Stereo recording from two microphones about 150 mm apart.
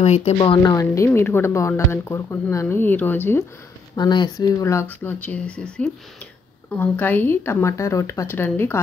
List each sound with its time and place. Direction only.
0.0 s a woman's voice: 45° left (ahead or behind)
0.6 s speech: 20° left (ahead or behind)
3.9 s speech: 30° left (ahead or behind)